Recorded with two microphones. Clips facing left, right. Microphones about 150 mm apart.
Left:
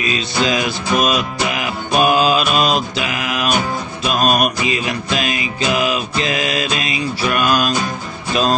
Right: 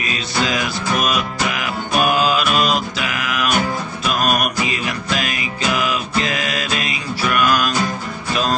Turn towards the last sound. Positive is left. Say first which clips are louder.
# left 1 dB
turn(degrees=25)  # may be behind; listen again after turning